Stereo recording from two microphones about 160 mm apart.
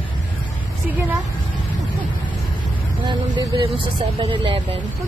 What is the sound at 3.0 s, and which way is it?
Speech, 30° right (ahead or behind).